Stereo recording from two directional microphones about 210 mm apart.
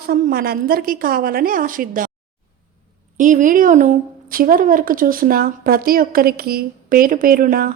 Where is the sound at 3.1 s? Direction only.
40° right (ahead or behind).